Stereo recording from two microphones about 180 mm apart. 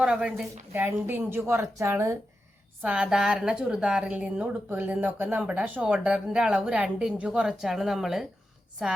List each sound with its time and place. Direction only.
0.0 s a woman's voice: 5° right (ahead or behind)
2.8 s speech: 5° right (ahead or behind)